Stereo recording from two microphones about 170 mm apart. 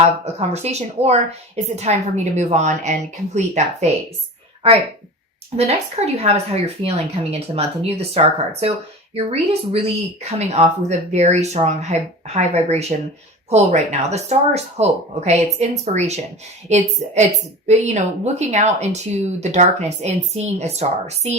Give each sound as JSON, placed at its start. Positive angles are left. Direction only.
{"t": 0.0, "sound": "a woman's voice", "side_deg": -40}
{"t": 5.5, "sound": "a woman's voice", "side_deg": -40}